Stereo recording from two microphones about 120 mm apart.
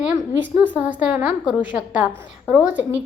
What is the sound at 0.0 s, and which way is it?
A woman's voice, 15° right (ahead or behind).